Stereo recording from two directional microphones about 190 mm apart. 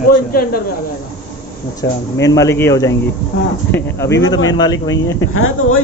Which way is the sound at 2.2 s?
15° left (ahead or behind).